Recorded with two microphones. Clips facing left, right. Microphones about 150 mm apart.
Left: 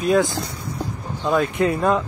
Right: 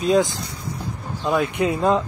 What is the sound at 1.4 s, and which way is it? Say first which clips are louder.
Speech: left 1 dB; 15° right (ahead or behind).